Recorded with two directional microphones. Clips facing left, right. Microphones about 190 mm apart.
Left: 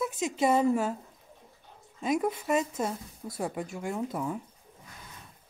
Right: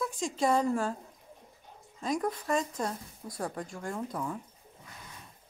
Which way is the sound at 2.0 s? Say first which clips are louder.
Left 3 dB; 5° left (ahead or behind).